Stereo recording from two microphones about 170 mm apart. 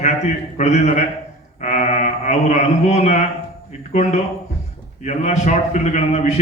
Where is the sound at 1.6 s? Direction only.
40° left (ahead or behind).